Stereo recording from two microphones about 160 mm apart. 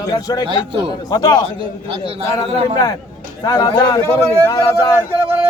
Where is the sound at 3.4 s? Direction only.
25° left (ahead or behind).